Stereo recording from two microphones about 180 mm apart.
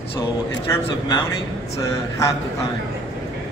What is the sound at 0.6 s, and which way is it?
Speech, 15° left (ahead or behind).